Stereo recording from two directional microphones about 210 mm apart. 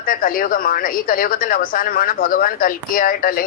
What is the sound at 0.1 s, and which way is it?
A woman's voice, 40° left (ahead or behind).